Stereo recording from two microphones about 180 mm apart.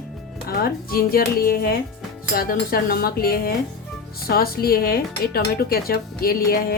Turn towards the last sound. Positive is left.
turn(degrees=55)  # may be behind; listen again after turning